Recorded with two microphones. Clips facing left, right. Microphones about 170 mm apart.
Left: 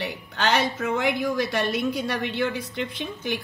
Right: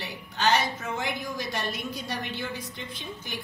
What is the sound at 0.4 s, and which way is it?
A woman's voice, 65° left (ahead or behind).